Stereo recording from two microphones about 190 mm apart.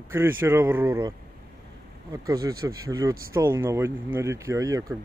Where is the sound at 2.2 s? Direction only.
20° right (ahead or behind).